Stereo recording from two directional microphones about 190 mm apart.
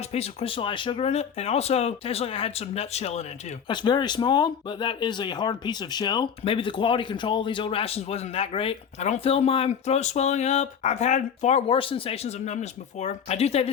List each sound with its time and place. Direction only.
0.1 s speech: 35° left (ahead or behind)
3.7 s speech: 25° left (ahead or behind)